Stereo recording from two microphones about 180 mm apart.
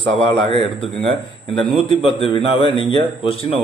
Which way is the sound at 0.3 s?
30° left (ahead or behind).